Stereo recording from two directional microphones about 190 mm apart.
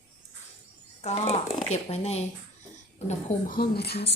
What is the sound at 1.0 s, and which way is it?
A woman's voice, 35° left (ahead or behind).